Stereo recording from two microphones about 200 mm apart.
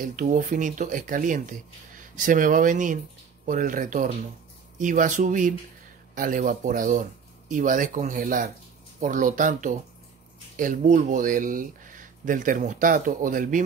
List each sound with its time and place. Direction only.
0.0 s speech: 40° right (ahead or behind)